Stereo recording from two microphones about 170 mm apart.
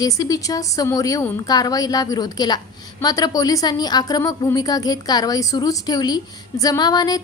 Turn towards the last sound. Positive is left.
turn(degrees=25)  # may be behind; listen again after turning